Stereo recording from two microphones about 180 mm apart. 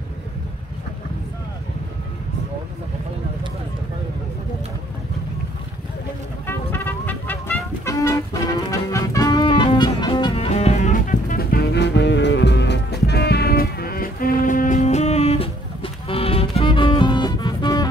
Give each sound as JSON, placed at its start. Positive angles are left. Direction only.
{"t": 6.4, "sound": "music", "side_deg": 10}